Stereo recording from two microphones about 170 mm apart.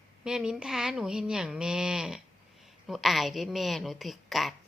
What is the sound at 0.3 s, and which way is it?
A woman's voice, 5° right (ahead or behind).